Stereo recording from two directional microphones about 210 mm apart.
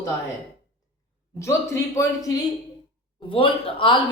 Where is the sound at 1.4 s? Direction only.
15° left (ahead or behind).